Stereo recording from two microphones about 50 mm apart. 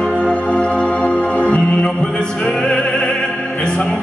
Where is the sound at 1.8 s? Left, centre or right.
Centre.